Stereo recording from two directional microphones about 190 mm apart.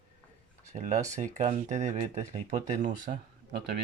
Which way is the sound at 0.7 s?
40° right (ahead or behind).